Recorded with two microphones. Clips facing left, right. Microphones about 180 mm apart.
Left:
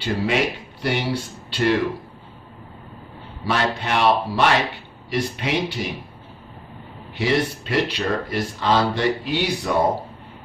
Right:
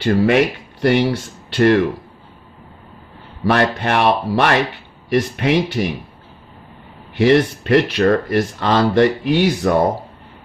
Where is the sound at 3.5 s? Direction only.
60° right (ahead or behind).